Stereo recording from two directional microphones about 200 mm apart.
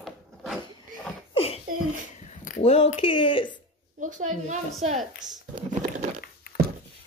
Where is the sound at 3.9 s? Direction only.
40° right (ahead or behind).